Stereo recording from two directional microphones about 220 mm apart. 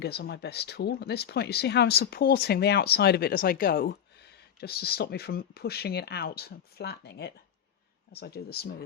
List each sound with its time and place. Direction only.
0.0 s speech: 50° left (ahead or behind)